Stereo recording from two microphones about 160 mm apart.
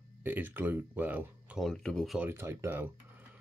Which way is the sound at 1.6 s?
5° left (ahead or behind).